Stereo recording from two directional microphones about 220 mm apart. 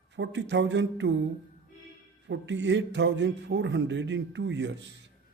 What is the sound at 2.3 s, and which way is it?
A man's voice, 55° right (ahead or behind).